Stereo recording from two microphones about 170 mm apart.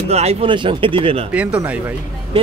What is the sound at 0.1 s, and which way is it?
Speech, 40° right (ahead or behind).